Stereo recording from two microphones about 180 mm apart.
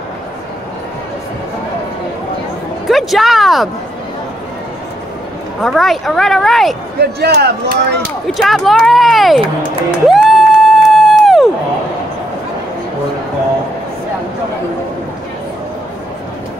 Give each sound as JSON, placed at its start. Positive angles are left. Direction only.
{"t": 2.9, "sound": "speech", "side_deg": 0}
{"t": 5.6, "sound": "speech", "side_deg": 0}
{"t": 7.0, "sound": "speech", "side_deg": -65}
{"t": 8.0, "sound": "speech", "side_deg": 0}
{"t": 10.0, "sound": "crowd", "side_deg": 0}